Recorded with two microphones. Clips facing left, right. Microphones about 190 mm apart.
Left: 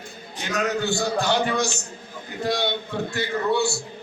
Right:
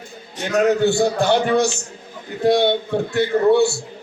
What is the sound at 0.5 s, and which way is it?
A man's voice, 55° right (ahead or behind).